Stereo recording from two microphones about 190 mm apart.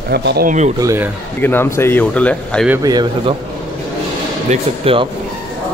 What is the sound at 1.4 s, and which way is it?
Speech, 10° left (ahead or behind).